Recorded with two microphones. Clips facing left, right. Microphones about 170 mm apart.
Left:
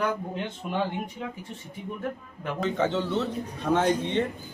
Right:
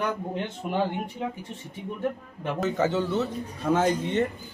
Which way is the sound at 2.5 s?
5° right (ahead or behind).